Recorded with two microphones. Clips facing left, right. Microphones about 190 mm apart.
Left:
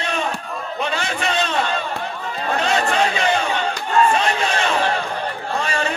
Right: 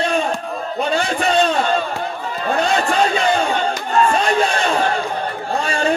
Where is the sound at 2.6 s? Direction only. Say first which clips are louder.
Right 2 dB; 35° right (ahead or behind).